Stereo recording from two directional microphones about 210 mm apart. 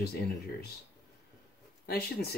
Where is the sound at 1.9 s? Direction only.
45° left (ahead or behind).